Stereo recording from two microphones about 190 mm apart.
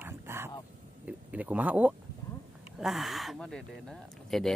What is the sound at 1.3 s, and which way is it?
Speech, 10° right (ahead or behind).